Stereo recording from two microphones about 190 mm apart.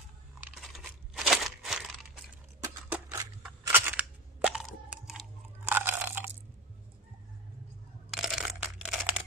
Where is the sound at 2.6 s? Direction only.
15° right (ahead or behind).